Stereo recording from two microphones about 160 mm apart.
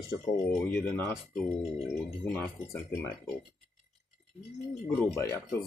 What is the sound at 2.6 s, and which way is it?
Speech, 15° left (ahead or behind).